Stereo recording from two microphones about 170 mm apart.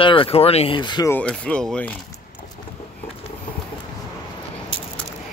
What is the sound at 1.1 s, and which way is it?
Speech, 5° left (ahead or behind).